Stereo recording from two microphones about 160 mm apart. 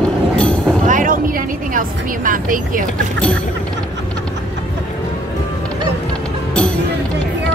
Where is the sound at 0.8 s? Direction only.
55° right (ahead or behind).